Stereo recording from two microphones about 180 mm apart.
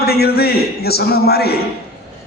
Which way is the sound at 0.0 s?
60° left (ahead or behind).